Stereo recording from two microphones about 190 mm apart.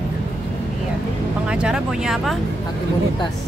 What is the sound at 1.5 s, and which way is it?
Speech, 5° right (ahead or behind).